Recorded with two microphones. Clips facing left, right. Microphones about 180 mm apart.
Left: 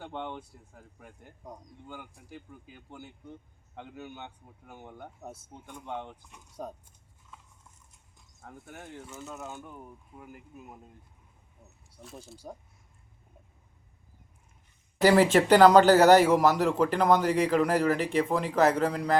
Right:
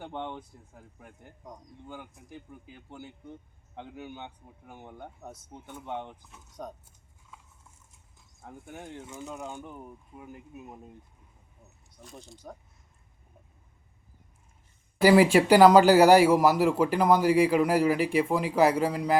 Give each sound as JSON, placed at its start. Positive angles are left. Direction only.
{"t": 0.2, "sound": "a man's voice", "side_deg": -10}
{"t": 2.3, "sound": "a man's voice", "side_deg": -15}
{"t": 5.0, "sound": "speech", "side_deg": 5}
{"t": 5.5, "sound": "a man's voice", "side_deg": -5}
{"t": 6.2, "sound": "speech", "side_deg": 0}
{"t": 8.4, "sound": "a man's voice", "side_deg": -10}
{"t": 11.9, "sound": "speech", "side_deg": 0}
{"t": 15.0, "sound": "a man's voice", "side_deg": -10}